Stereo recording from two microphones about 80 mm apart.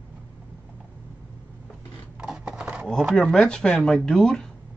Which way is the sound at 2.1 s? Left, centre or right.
Centre.